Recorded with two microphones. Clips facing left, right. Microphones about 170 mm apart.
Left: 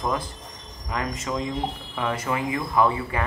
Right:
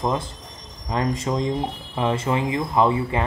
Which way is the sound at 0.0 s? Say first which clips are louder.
Right 3 dB; 25° right (ahead or behind).